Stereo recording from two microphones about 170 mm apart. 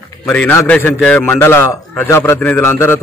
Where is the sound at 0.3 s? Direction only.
10° left (ahead or behind).